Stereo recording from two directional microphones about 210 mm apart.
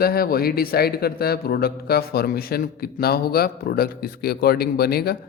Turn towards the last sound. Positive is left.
turn(degrees=50)  # may be behind; listen again after turning